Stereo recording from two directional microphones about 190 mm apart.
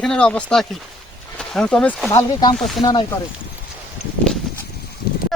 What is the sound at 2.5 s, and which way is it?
Speech, centre (ahead or behind).